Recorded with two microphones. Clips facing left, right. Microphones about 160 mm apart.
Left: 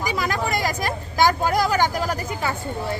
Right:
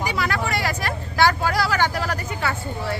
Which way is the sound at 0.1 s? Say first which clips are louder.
Even; 15° left (ahead or behind).